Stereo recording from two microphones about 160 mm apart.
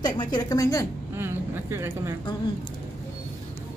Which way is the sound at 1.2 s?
15° right (ahead or behind).